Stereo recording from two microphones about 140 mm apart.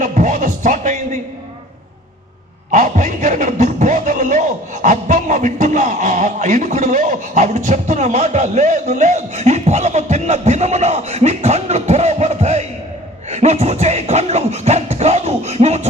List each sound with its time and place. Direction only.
0.0 s music: 60° right (ahead or behind)
2.7 s speech: 60° right (ahead or behind)
13.3 s music: 55° right (ahead or behind)